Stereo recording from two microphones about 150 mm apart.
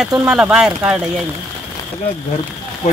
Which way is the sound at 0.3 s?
5° right (ahead or behind).